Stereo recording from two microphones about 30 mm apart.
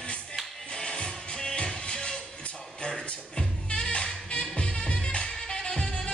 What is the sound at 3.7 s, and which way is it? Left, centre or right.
Music, left.